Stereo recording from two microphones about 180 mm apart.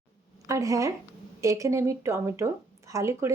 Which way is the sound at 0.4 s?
15° right (ahead or behind).